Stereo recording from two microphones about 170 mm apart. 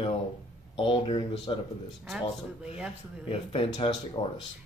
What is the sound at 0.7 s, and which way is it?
Speech, 30° left (ahead or behind).